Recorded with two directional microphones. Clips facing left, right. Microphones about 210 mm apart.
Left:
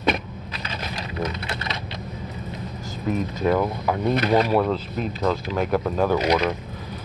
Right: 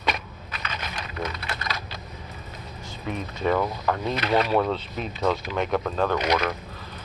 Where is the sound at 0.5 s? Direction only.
30° left (ahead or behind).